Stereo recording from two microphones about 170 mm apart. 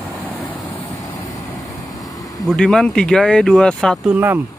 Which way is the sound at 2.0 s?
20° left (ahead or behind).